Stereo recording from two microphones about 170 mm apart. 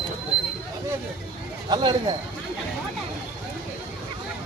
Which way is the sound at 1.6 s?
25° right (ahead or behind).